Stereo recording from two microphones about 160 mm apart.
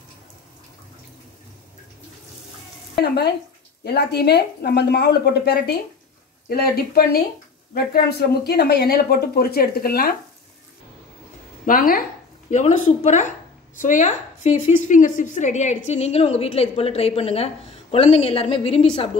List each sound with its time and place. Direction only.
3.8 s speech: 90° left
6.5 s speech: 70° left (ahead or behind)
11.6 s speech: 60° left (ahead or behind)
12.4 s a woman's voice: 45° left (ahead or behind)